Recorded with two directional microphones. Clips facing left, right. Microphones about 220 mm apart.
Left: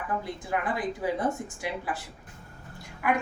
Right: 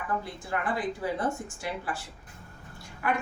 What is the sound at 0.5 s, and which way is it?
Speech, 15° left (ahead or behind).